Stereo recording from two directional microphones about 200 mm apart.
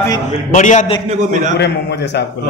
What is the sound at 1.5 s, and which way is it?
Speech, 60° left (ahead or behind).